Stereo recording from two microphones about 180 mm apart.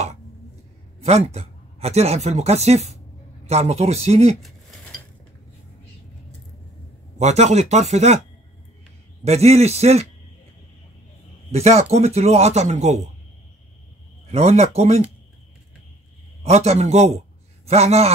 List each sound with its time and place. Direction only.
1.0 s speech: 35° right (ahead or behind)
4.4 s cutlery: centre (ahead or behind)
7.2 s speech: 40° right (ahead or behind)
9.2 s speech: 35° right (ahead or behind)
11.5 s speech: 35° right (ahead or behind)
14.3 s speech: 35° right (ahead or behind)
16.4 s speech: 35° right (ahead or behind)